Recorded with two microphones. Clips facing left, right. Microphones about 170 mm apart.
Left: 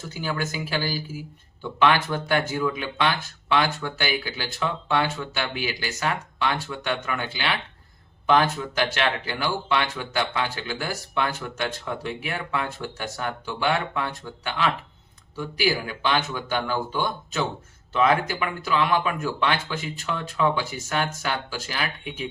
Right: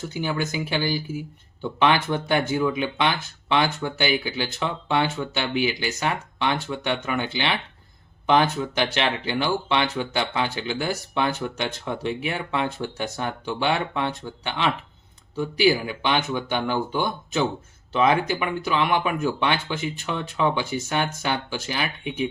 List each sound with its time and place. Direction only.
0.1 s speech: 20° right (ahead or behind)